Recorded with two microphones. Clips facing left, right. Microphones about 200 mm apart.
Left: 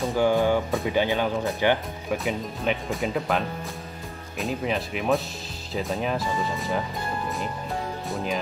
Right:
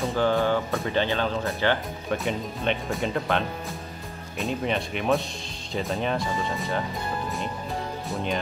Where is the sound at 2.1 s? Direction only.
Centre (ahead or behind).